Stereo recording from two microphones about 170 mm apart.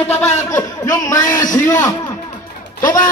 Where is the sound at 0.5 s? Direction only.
20° left (ahead or behind).